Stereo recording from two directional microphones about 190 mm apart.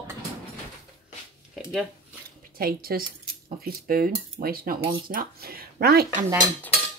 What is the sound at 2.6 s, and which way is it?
Speech, 50° right (ahead or behind).